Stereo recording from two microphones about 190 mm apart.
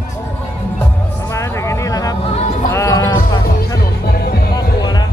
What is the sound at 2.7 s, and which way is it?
Music, 15° left (ahead or behind).